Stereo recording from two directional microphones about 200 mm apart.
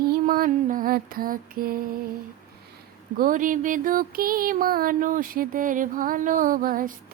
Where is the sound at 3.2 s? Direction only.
40° right (ahead or behind).